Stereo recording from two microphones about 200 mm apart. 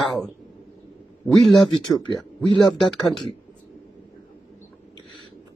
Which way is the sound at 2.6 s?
Centre (ahead or behind).